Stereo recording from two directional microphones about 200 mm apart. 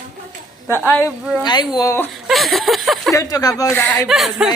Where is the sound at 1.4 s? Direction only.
20° left (ahead or behind).